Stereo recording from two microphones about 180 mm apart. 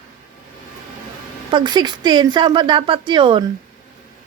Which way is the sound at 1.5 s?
25° right (ahead or behind).